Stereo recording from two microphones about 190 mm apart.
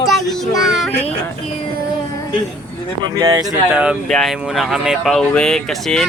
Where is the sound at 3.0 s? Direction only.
15° right (ahead or behind).